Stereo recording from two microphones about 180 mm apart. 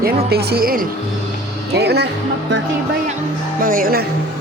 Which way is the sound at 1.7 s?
65° right (ahead or behind).